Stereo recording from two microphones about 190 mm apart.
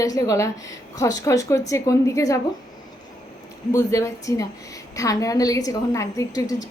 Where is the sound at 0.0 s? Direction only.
15° left (ahead or behind).